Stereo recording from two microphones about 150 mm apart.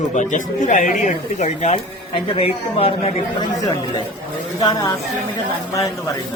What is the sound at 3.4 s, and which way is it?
Speech, 25° left (ahead or behind).